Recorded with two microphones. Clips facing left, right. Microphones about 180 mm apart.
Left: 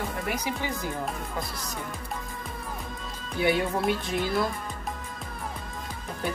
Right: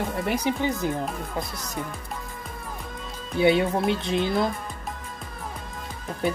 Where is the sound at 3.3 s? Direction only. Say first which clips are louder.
Right 5 dB; 20° right (ahead or behind).